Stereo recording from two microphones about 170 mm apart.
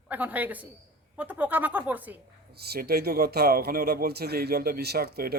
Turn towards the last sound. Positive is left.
turn(degrees=-65)  # may be behind; listen again after turning